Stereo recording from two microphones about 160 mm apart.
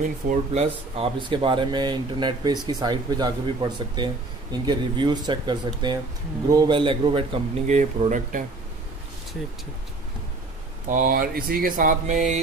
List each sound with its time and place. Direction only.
0.3 s speech: 40° right (ahead or behind)
10.9 s speech: 60° right (ahead or behind)